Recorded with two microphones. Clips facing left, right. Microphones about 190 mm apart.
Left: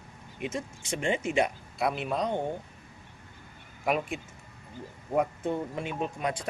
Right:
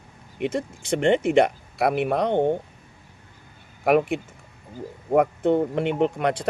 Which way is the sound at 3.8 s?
65° right (ahead or behind).